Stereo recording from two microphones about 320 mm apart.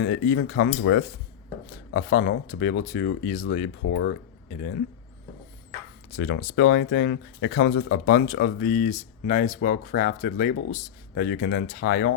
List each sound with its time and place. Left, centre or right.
0.0 s speech: left
6.1 s speech: left